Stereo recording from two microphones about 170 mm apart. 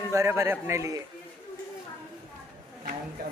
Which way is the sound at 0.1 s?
15° right (ahead or behind).